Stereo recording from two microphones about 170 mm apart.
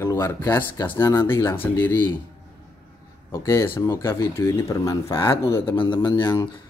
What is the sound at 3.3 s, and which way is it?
Speech, 15° left (ahead or behind).